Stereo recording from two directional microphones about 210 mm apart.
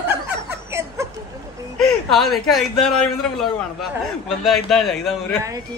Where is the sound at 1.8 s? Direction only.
Centre (ahead or behind).